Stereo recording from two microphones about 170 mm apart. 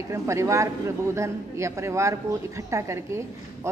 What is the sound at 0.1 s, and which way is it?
A woman's voice, 15° right (ahead or behind).